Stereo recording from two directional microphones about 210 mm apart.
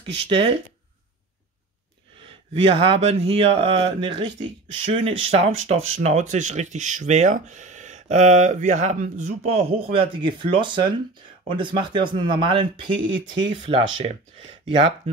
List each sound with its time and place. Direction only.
0.3 s speech: 25° right (ahead or behind)
2.2 s speech: 25° right (ahead or behind)